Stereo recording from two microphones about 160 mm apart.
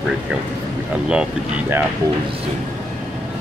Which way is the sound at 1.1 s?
10° right (ahead or behind).